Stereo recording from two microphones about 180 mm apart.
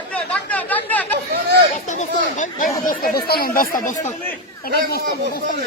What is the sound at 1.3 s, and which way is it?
Chatter, 65° right (ahead or behind).